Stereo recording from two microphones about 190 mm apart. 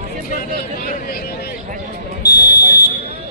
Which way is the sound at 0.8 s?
50° left (ahead or behind).